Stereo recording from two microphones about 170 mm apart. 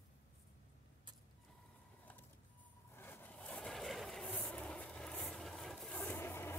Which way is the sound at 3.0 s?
10° left (ahead or behind).